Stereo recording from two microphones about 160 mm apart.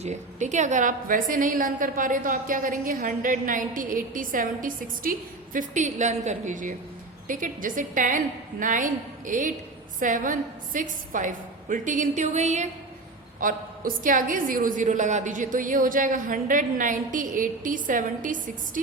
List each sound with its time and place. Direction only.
0.0 s a woman's voice: 45° right (ahead or behind)
13.4 s a woman's voice: 60° right (ahead or behind)